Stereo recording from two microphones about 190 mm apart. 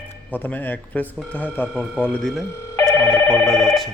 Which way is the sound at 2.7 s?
15° left (ahead or behind).